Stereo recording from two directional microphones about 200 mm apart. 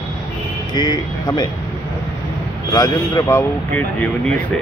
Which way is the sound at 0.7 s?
20° left (ahead or behind).